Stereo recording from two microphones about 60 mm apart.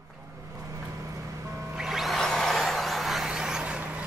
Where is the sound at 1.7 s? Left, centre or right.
Centre.